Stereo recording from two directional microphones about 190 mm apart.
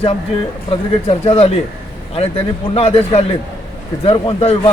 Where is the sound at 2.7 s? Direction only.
30° left (ahead or behind).